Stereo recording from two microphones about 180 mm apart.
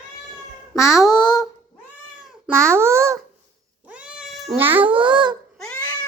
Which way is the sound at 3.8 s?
5° right (ahead or behind).